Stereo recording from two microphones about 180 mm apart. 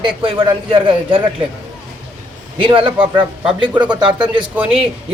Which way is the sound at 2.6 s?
30° right (ahead or behind).